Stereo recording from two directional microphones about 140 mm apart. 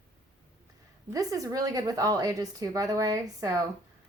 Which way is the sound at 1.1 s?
25° right (ahead or behind).